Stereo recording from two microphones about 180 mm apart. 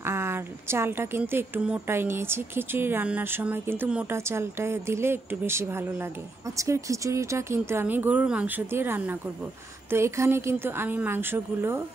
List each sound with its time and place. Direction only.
0.0 s a woman's voice: 15° right (ahead or behind)